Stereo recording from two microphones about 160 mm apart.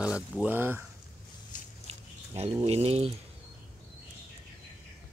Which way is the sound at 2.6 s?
40° right (ahead or behind).